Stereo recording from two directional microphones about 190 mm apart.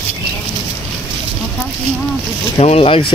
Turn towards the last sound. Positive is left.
turn(degrees=30)  # may be behind; listen again after turning